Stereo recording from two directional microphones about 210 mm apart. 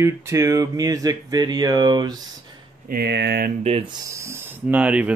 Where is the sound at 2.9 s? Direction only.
50° right (ahead or behind).